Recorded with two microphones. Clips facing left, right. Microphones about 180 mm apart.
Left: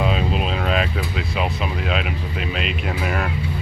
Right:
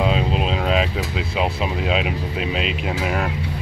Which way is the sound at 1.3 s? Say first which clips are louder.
Right 3 dB; 25° right (ahead or behind).